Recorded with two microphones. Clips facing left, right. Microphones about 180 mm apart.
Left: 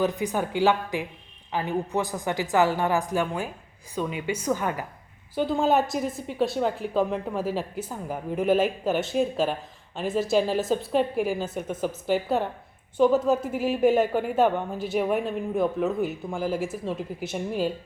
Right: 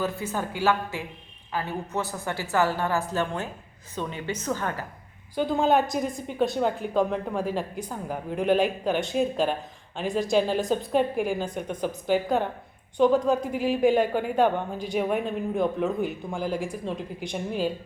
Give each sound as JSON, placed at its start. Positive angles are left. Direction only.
{"t": 0.0, "sound": "a woman's voice", "side_deg": 15}
{"t": 5.3, "sound": "a woman's voice", "side_deg": 0}